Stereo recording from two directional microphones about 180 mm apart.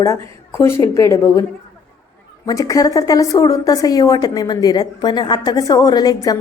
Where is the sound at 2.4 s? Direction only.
20° left (ahead or behind).